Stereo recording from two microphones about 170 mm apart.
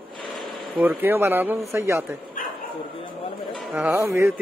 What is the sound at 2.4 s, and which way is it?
Bow-wow, 50° left (ahead or behind).